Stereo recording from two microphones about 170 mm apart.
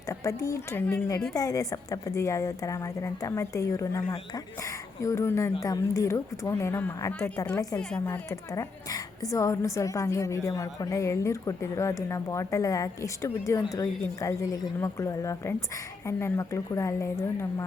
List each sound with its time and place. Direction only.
0.1 s a woman's voice: 20° left (ahead or behind)
7.8 s a woman's voice: 5° left (ahead or behind)